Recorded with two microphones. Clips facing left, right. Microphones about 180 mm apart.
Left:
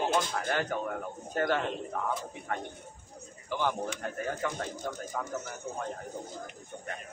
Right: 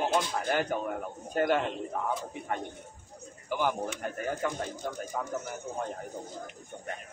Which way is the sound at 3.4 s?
10° right (ahead or behind).